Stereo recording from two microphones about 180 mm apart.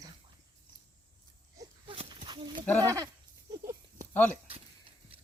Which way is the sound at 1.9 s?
30° right (ahead or behind).